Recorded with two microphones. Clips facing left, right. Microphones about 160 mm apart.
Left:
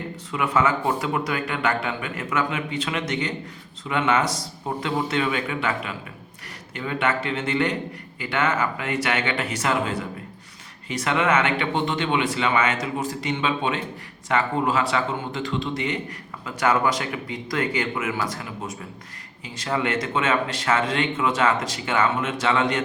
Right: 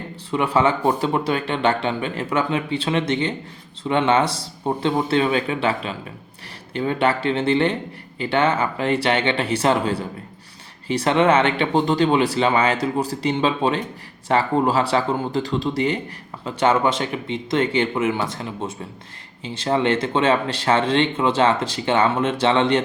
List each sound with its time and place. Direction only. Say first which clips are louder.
0.3 s speech: right 4 dB; 30° right (ahead or behind)